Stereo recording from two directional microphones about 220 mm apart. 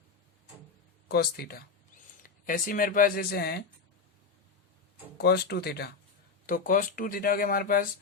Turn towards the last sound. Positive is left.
turn(degrees=40)  # may be behind; listen again after turning